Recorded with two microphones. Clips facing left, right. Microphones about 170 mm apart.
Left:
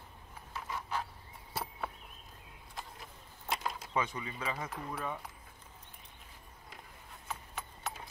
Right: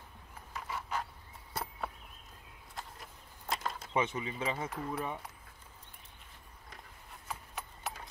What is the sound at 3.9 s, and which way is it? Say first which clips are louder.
Speech: right 4 dB; 25° right (ahead or behind).